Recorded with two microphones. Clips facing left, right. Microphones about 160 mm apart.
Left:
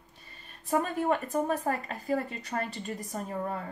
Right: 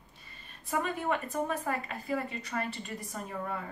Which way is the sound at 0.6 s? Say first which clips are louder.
Left 4 dB; 45° left (ahead or behind).